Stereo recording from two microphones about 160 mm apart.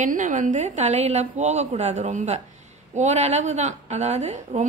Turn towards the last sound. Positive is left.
turn(degrees=-45)  # may be behind; listen again after turning